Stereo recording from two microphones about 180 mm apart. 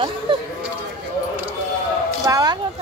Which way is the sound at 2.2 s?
20° right (ahead or behind).